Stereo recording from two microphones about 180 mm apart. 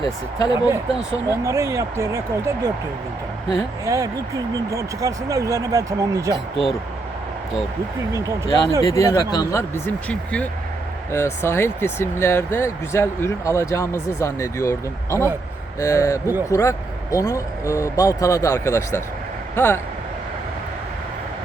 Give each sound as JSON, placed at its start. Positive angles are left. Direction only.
{"t": 0.0, "sound": "speech", "side_deg": 25}
{"t": 1.3, "sound": "speech", "side_deg": -15}
{"t": 3.8, "sound": "speech", "side_deg": -20}
{"t": 8.1, "sound": "speech", "side_deg": -15}
{"t": 8.8, "sound": "speech", "side_deg": 15}